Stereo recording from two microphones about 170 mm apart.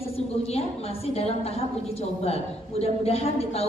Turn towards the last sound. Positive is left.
turn(degrees=35)  # may be behind; listen again after turning